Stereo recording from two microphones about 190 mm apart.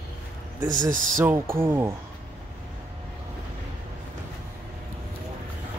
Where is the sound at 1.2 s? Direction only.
10° right (ahead or behind).